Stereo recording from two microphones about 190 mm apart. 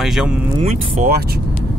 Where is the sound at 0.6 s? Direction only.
35° right (ahead or behind).